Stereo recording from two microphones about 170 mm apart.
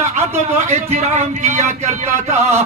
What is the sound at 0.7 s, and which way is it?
A man's voice, 45° right (ahead or behind).